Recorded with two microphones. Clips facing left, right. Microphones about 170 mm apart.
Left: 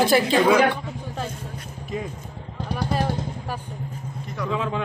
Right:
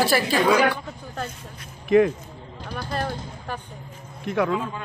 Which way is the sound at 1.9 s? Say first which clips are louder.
Right 14 dB; 65° right (ahead or behind).